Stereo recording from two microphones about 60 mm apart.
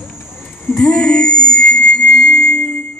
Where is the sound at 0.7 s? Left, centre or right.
Centre.